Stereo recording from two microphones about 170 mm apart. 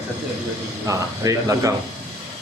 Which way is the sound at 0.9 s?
20° right (ahead or behind).